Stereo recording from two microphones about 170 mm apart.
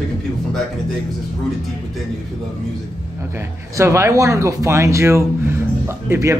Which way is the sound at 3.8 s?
15° right (ahead or behind).